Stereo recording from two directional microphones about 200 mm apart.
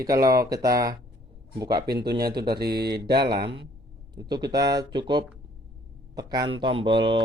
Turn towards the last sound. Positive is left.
turn(degrees=-25)  # may be behind; listen again after turning